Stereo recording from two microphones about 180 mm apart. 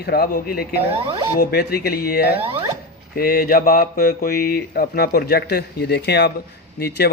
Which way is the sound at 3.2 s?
55° left (ahead or behind).